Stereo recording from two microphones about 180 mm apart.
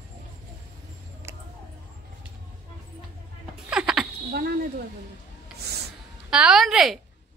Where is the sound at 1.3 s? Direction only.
15° right (ahead or behind).